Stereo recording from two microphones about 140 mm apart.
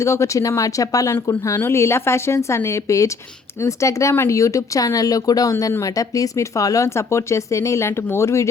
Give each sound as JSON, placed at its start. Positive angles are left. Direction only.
{"t": 0.0, "sound": "speech", "side_deg": 20}